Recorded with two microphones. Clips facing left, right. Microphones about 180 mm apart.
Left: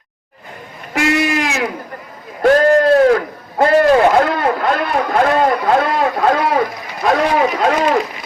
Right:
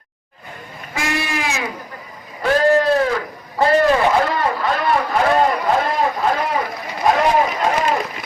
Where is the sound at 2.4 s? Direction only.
50° left (ahead or behind); by 6.2 s 70° left (ahead or behind).